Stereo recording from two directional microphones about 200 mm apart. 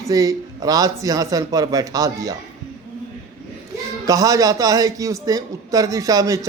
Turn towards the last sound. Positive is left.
turn(degrees=-15)  # may be behind; listen again after turning